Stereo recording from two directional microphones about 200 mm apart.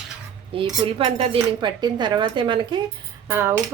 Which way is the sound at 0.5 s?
25° right (ahead or behind).